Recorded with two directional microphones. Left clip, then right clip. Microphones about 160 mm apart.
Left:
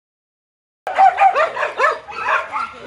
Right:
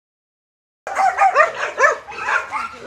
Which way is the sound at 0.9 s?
35° left (ahead or behind).